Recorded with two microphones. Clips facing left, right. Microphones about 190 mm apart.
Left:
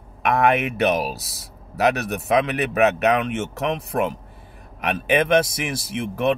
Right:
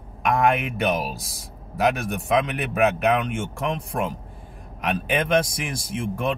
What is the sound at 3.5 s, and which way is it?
Speech, 70° left (ahead or behind).